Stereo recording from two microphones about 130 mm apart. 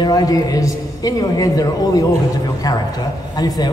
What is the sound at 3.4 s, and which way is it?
Speech, 30° left (ahead or behind).